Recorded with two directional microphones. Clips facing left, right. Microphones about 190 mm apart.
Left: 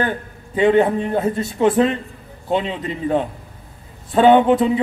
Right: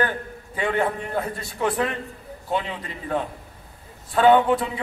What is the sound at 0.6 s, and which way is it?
A man's voice, 20° left (ahead or behind).